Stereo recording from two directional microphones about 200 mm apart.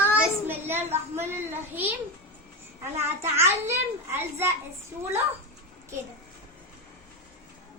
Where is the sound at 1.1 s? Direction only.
10° right (ahead or behind).